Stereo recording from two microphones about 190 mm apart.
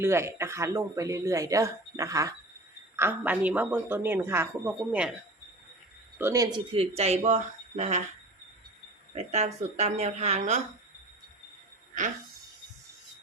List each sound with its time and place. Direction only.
0.0 s speech: 15° right (ahead or behind)
6.1 s speech: 15° right (ahead or behind)
6.7 s speech: 35° right (ahead or behind)
9.1 s speech: 35° right (ahead or behind)